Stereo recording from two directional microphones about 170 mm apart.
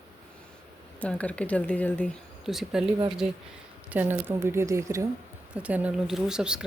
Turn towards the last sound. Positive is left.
turn(degrees=-5)  # may be behind; listen again after turning